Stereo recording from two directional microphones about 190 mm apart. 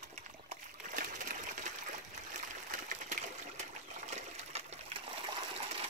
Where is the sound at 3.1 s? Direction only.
35° right (ahead or behind).